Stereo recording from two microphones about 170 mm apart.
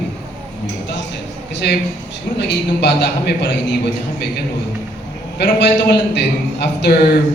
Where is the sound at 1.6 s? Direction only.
75° left (ahead or behind).